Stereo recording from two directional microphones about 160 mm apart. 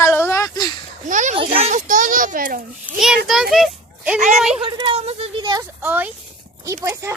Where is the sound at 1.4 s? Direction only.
40° right (ahead or behind).